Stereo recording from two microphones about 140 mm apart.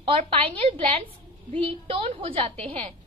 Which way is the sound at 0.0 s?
45° right (ahead or behind).